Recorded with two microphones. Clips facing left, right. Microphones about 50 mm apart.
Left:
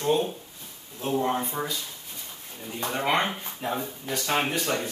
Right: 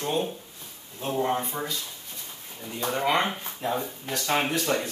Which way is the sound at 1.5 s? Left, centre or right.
Centre.